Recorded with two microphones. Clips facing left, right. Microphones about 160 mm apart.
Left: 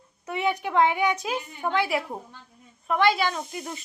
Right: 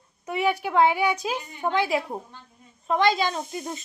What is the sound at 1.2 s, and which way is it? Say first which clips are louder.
A woman's voice: right 1 dB; 25° right (ahead or behind).